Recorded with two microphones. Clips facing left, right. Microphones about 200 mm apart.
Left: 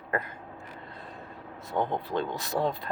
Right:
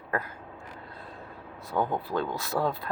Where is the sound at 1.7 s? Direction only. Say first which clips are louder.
Right 1 dB; 20° left (ahead or behind).